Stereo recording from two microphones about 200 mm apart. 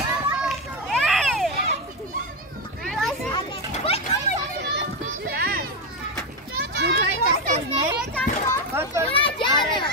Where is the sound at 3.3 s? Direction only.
30° left (ahead or behind).